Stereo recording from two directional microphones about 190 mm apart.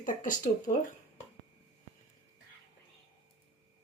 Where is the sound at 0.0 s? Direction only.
45° left (ahead or behind).